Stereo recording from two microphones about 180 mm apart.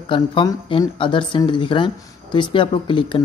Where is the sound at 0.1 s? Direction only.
25° left (ahead or behind).